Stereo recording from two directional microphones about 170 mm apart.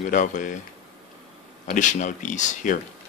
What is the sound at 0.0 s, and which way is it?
Speech, 50° left (ahead or behind).